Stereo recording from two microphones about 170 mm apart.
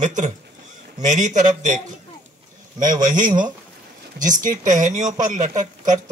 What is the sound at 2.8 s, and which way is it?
Speech, 50° right (ahead or behind).